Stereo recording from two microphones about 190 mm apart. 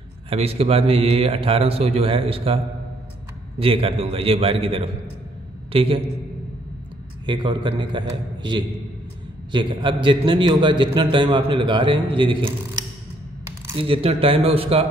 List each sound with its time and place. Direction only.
0.3 s a man's voice: 30° right (ahead or behind)
7.2 s a man's voice: 25° right (ahead or behind)